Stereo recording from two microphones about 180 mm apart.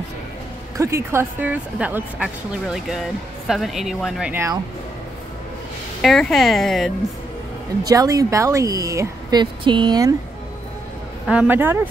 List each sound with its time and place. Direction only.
0.7 s a woman's voice: 15° right (ahead or behind)
6.0 s speech: centre (ahead or behind)
7.8 s speech: 20° right (ahead or behind)
11.2 s a woman's voice: 10° right (ahead or behind)